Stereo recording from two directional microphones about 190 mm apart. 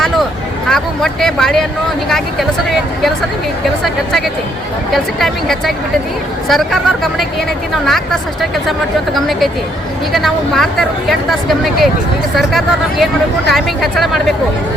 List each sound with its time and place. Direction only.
0.7 s speech: centre (ahead or behind)
4.9 s speech: centre (ahead or behind)